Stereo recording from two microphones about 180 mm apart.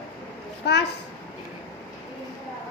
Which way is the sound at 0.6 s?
65° left (ahead or behind).